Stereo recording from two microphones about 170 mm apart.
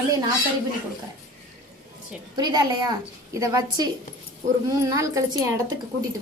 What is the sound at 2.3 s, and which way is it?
A woman's voice, 25° right (ahead or behind).